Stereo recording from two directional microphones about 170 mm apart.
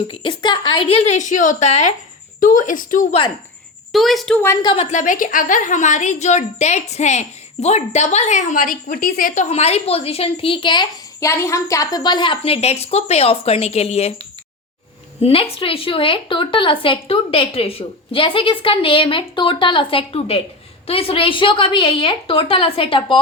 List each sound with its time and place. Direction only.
0.1 s a woman's voice: 30° left (ahead or behind); by 3.2 s 50° left (ahead or behind)
3.9 s a woman's voice: centre (ahead or behind)
4.6 s a woman's voice: 30° left (ahead or behind)
4.9 s a woman's voice: 50° left (ahead or behind)
15.2 s a woman's voice: 35° left (ahead or behind)